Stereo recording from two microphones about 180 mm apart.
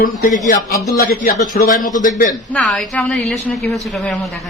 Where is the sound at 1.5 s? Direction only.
50° left (ahead or behind).